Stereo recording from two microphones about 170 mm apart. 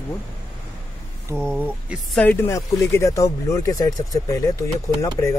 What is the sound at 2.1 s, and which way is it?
Speech, 10° left (ahead or behind).